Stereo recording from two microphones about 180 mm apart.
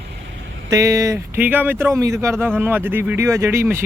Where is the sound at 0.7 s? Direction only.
20° right (ahead or behind).